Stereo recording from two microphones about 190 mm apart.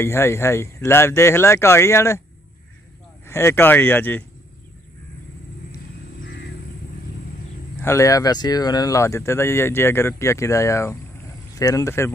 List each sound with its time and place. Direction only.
0.0 s speech: 10° left (ahead or behind)
3.3 s speech: 15° left (ahead or behind)
6.2 s music: 65° left (ahead or behind)
7.8 s speech: 15° left (ahead or behind)